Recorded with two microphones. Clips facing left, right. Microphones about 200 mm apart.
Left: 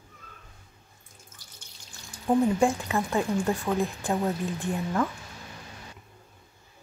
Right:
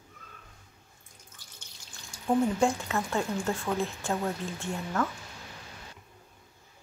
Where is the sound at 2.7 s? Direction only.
15° left (ahead or behind).